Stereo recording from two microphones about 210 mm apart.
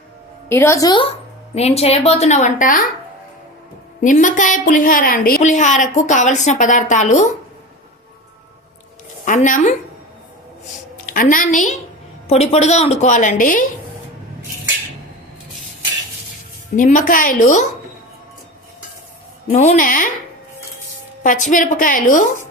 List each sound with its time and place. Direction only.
0.4 s a woman's voice: 10° left (ahead or behind); by 2.8 s 40° left (ahead or behind)
4.0 s a woman's voice: 35° left (ahead or behind)
9.2 s a woman's voice: 40° left (ahead or behind)
11.0 s a woman's voice: 40° left (ahead or behind)
16.7 s a woman's voice: 40° left (ahead or behind)
19.5 s a woman's voice: 35° left (ahead or behind)
21.2 s a woman's voice: 35° left (ahead or behind)